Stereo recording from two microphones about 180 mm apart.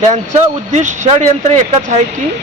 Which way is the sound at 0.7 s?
40° right (ahead or behind).